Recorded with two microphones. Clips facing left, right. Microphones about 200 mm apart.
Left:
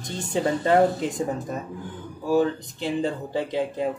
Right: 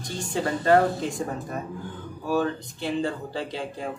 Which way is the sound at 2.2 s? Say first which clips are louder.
Left 4 dB; 15° left (ahead or behind).